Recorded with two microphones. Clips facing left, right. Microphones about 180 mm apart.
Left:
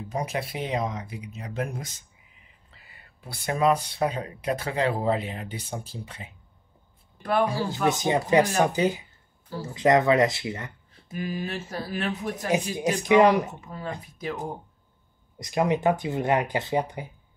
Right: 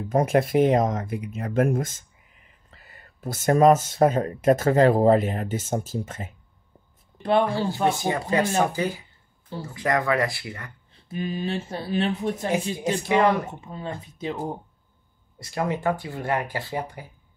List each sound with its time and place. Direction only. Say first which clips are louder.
0.1 s speech: right 11 dB; 50° right (ahead or behind)
7.5 s speech: right 2 dB; 25° right (ahead or behind)
7.9 s speech: left 3 dB; 20° left (ahead or behind)
11.1 s speech: right 3 dB; 25° right (ahead or behind)
13.1 s speech: left 3 dB; 15° left (ahead or behind)
13.5 s speech: right 1 dB; 25° right (ahead or behind)
15.3 s speech: left 3 dB; 20° left (ahead or behind)